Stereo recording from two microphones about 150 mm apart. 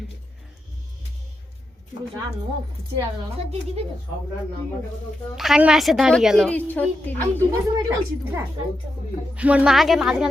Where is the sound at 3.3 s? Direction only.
45° right (ahead or behind).